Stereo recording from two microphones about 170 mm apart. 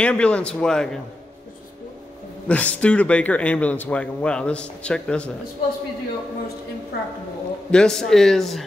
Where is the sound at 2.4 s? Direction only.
10° left (ahead or behind).